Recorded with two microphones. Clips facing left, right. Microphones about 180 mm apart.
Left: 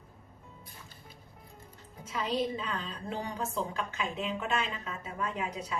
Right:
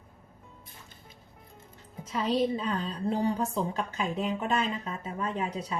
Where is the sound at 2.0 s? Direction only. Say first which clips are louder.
Right 5 dB; 30° right (ahead or behind).